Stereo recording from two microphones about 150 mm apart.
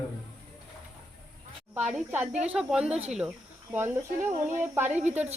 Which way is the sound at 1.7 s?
10° right (ahead or behind).